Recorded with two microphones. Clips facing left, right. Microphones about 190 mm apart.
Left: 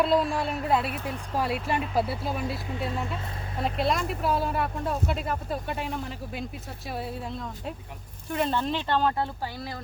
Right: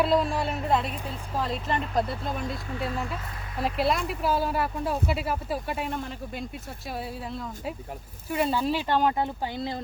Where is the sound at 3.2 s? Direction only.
30° left (ahead or behind).